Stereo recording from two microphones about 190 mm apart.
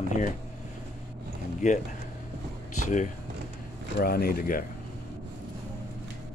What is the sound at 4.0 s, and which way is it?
Speech, 50° left (ahead or behind).